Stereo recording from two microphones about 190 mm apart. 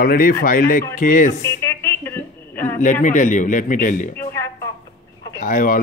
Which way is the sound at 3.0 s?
40° left (ahead or behind).